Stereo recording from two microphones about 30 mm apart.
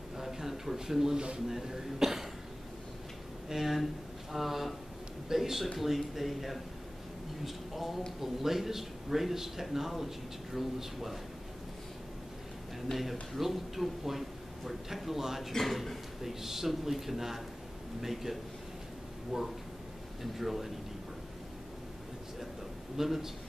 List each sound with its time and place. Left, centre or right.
0.2 s a sound: centre
1.1 s speech: right
1.5 s a man's voice: centre
3.4 s a man's voice: centre
12.9 s a man's voice: centre
15.6 s a man's voice: centre
22.9 s a man's voice: centre